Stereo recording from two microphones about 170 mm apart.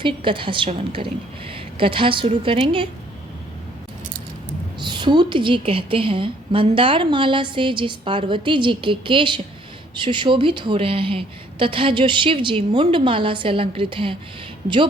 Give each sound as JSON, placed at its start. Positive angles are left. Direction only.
{"t": 0.0, "sound": "a woman's voice", "side_deg": -30}
{"t": 4.8, "sound": "a woman's voice", "side_deg": -25}